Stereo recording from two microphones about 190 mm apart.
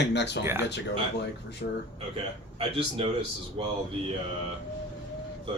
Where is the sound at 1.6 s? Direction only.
50° left (ahead or behind).